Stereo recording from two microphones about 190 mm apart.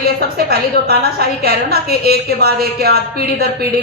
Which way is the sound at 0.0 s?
55° right (ahead or behind).